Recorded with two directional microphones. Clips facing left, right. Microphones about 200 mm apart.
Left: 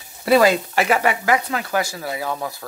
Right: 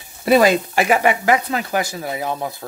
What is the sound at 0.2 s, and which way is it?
Speech, 15° right (ahead or behind).